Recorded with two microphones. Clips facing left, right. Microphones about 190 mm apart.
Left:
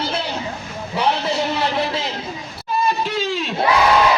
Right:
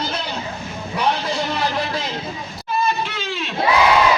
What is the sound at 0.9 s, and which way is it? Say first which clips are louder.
Speech: left 1 dB; 25° left (ahead or behind).